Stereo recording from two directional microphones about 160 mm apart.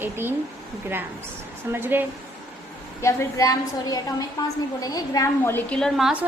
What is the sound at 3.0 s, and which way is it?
A woman's voice, 20° left (ahead or behind).